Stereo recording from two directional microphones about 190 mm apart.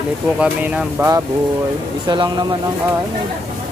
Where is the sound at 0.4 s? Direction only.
10° right (ahead or behind).